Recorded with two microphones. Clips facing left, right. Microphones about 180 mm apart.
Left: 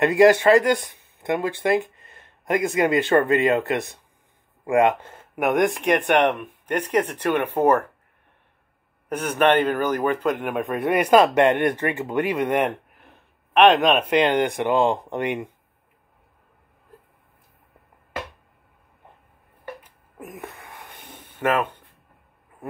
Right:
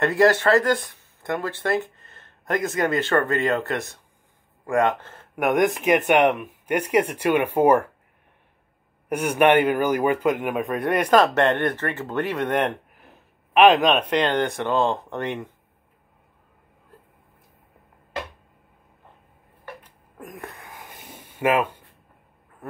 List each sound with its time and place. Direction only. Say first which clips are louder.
0.0 s speech: left 3 dB; 15° left (ahead or behind); by 7.8 s 10° right (ahead or behind)
9.1 s a man's voice: right 1 dB; 10° right (ahead or behind); by 15.4 s 15° left (ahead or behind)
19.8 s a sound: left 1 dB; 5° left (ahead or behind)
21.4 s speech: right 1 dB; 10° right (ahead or behind)